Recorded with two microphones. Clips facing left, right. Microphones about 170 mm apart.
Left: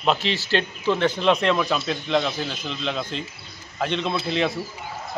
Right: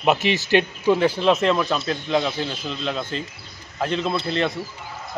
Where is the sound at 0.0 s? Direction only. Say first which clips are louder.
Right 3 dB; 15° right (ahead or behind).